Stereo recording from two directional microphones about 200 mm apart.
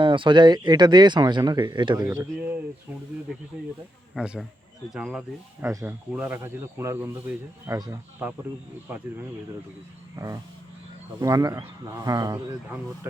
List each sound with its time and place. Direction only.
0.0 s speech: 25° right (ahead or behind)
4.1 s speech: centre (ahead or behind)
10.2 s speech: 15° right (ahead or behind)